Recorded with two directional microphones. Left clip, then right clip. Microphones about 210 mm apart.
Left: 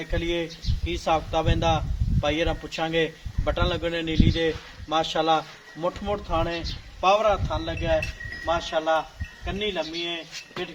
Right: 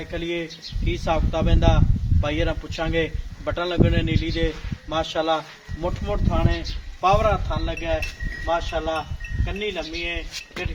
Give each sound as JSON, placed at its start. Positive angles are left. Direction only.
{"t": 0.1, "sound": "a man's voice", "side_deg": 35}